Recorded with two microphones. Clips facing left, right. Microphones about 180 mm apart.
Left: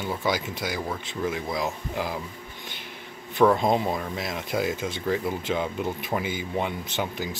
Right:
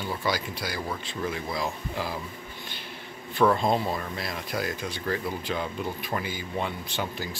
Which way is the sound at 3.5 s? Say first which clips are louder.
Left 2 dB; 15° left (ahead or behind).